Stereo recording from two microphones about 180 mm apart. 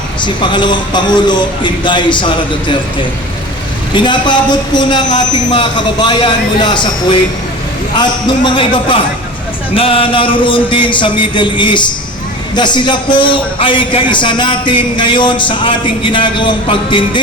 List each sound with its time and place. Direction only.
0.2 s speech: 25° left (ahead or behind)
3.9 s speech: 25° left (ahead or behind)